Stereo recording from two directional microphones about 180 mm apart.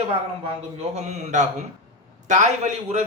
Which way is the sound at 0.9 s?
40° right (ahead or behind).